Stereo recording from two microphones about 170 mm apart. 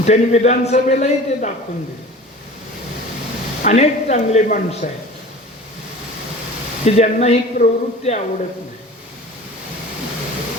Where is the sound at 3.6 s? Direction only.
40° left (ahead or behind).